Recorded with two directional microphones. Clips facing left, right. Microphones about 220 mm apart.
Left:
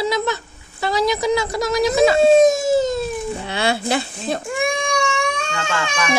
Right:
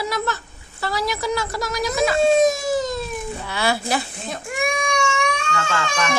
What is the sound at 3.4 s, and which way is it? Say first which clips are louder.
Speech: left 1 dB; 25° left (ahead or behind).